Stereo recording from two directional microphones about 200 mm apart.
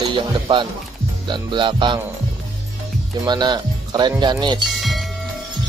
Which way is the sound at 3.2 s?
20° right (ahead or behind).